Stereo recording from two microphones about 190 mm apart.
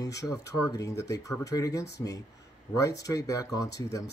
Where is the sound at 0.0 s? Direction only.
20° left (ahead or behind).